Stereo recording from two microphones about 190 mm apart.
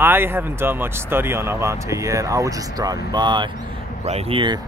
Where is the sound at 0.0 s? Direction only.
10° right (ahead or behind); by 4.6 s 25° right (ahead or behind).